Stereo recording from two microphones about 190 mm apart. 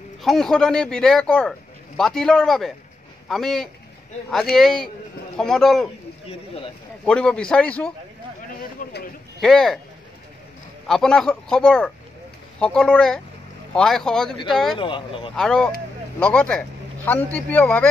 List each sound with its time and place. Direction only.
0.2 s speech: centre (ahead or behind)
7.1 s speech: 5° left (ahead or behind)
8.8 s speech: 45° left (ahead or behind)
9.4 s speech: centre (ahead or behind)
10.9 s speech: centre (ahead or behind)
14.8 s speech: 25° left (ahead or behind)
15.3 s speech: 5° left (ahead or behind)